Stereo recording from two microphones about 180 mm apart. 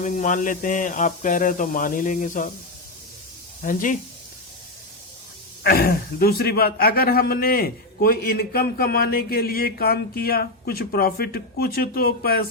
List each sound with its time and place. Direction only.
0.0 s a man's voice: 45° left (ahead or behind)
3.6 s a man's voice: 50° left (ahead or behind)
5.6 s a man's voice: 60° left (ahead or behind)